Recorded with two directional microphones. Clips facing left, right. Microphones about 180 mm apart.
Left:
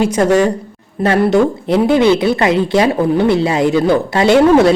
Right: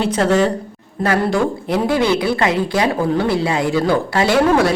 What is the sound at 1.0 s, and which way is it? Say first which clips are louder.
Speech: left 5 dB; 25° left (ahead or behind).